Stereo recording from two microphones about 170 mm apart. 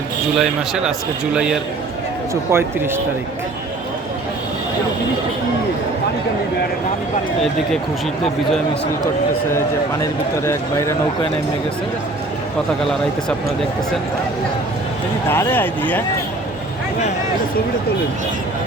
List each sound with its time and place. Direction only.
0.3 s a man's voice: centre (ahead or behind)
2.3 s speech: 15° right (ahead or behind)
10.0 s speech: 15° left (ahead or behind)
12.8 s a man's voice: centre (ahead or behind)
15.3 s speech: 10° left (ahead or behind)